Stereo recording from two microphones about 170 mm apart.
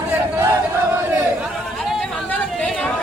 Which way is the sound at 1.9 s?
Centre (ahead or behind).